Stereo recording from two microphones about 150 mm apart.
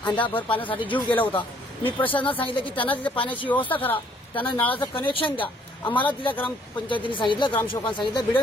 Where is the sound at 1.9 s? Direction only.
35° left (ahead or behind).